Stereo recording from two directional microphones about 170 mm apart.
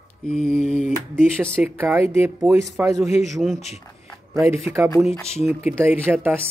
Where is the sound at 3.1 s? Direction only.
40° left (ahead or behind).